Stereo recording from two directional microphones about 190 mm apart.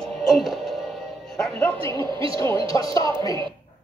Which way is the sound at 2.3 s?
20° left (ahead or behind).